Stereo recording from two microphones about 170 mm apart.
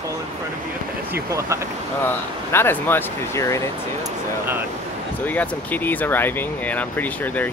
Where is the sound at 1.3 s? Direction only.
15° right (ahead or behind).